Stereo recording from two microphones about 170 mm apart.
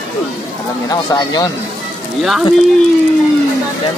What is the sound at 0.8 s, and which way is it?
Speech, 25° left (ahead or behind).